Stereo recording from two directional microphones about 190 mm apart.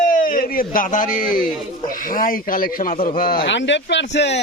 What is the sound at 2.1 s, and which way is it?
Speech, 50° left (ahead or behind).